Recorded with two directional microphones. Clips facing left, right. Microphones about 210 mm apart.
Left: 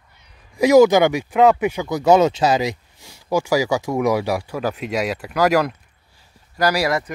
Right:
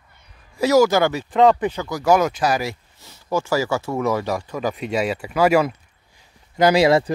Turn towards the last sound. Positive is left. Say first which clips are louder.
# right 5 dB
turn(degrees=-25)  # may be behind; listen again after turning